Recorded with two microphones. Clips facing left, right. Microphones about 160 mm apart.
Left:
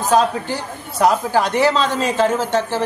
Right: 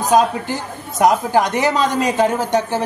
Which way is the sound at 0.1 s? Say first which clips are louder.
Right 1 dB; 15° right (ahead or behind).